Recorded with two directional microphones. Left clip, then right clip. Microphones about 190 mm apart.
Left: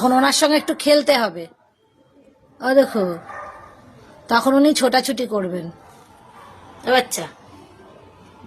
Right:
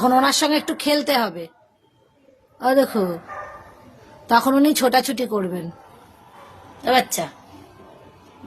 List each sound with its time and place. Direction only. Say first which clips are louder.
0.0 s a woman's voice: left 1 dB; centre (ahead or behind)
2.6 s a woman's voice: left 2 dB; 10° right (ahead or behind)
4.3 s a woman's voice: left 1 dB; 10° right (ahead or behind)
6.8 s a woman's voice: even; 20° right (ahead or behind)